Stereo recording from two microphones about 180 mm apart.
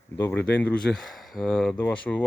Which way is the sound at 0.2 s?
10° left (ahead or behind).